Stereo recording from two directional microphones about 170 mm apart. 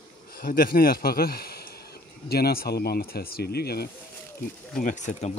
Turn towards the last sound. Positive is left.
turn(degrees=40)  # may be behind; listen again after turning